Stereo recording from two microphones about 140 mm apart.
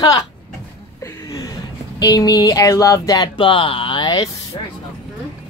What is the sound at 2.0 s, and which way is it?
Speech, 25° left (ahead or behind).